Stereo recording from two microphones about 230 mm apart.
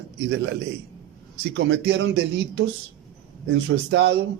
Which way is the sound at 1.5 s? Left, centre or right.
Right.